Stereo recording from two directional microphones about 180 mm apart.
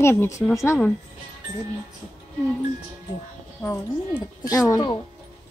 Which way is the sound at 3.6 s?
20° left (ahead or behind).